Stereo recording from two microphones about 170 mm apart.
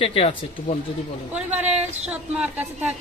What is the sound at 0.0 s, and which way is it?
Speech, 35° left (ahead or behind).